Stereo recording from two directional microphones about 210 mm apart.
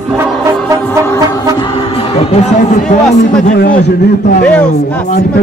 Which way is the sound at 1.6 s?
30° left (ahead or behind).